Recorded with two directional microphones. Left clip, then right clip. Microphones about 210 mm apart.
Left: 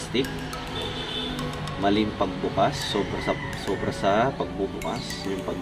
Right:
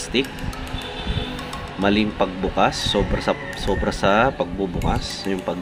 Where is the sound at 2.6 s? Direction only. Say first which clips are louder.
Right 5 dB; 45° right (ahead or behind).